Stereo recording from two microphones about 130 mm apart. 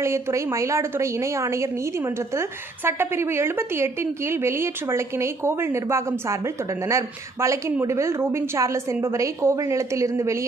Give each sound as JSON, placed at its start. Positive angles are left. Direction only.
{"t": 0.0, "sound": "a woman's voice", "side_deg": -20}